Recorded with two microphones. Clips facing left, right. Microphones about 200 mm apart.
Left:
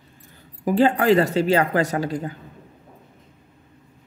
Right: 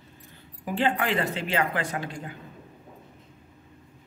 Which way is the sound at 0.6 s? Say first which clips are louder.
Left 8 dB; 40° left (ahead or behind).